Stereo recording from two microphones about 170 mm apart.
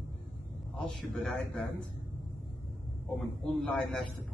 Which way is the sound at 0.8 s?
Centre (ahead or behind).